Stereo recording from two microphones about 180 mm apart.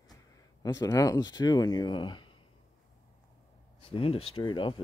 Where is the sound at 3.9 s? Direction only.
30° left (ahead or behind).